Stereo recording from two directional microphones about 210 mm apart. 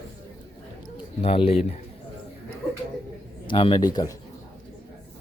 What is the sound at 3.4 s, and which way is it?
Speech, 25° left (ahead or behind).